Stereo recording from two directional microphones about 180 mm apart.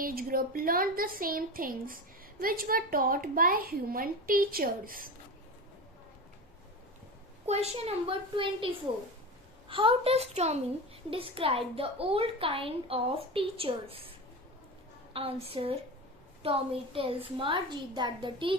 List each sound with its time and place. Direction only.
0.0 s a woman's voice: 55° right (ahead or behind)
7.4 s a woman's voice: 35° right (ahead or behind)
15.1 s a woman's voice: 30° right (ahead or behind)